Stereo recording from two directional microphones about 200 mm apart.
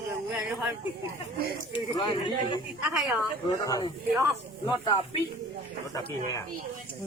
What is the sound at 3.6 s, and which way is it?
A man's voice, 15° left (ahead or behind).